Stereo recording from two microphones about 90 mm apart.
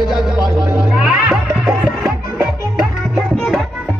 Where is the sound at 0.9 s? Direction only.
5° right (ahead or behind).